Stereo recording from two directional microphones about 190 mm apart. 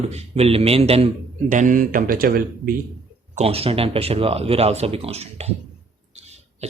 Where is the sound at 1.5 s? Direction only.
45° right (ahead or behind).